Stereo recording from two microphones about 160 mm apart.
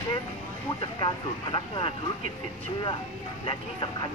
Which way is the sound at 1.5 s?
30° left (ahead or behind).